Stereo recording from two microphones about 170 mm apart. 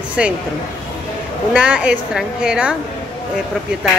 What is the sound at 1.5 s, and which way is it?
A woman's voice, 5° right (ahead or behind).